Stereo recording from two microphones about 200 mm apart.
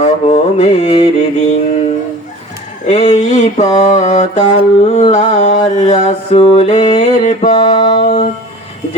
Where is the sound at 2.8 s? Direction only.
35° left (ahead or behind).